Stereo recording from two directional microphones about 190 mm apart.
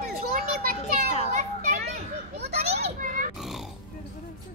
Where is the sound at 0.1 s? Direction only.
50° right (ahead or behind).